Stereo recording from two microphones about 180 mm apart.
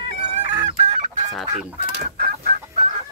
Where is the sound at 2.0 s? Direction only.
55° right (ahead or behind).